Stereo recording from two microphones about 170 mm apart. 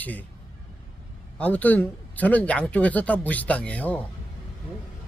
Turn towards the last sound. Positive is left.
turn(degrees=10)  # may be behind; listen again after turning